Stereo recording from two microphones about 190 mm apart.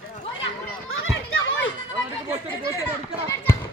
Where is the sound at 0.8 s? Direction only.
90° left.